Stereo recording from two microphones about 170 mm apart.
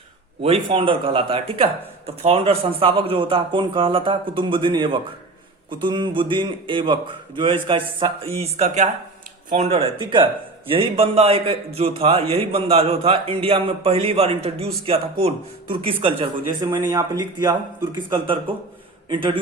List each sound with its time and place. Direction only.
0.4 s a man's voice: 35° right (ahead or behind)